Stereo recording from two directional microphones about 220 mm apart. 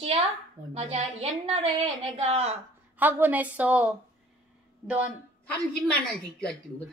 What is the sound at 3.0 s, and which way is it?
Speech, 10° right (ahead or behind).